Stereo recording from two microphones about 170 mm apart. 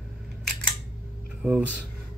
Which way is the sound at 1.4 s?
5° right (ahead or behind).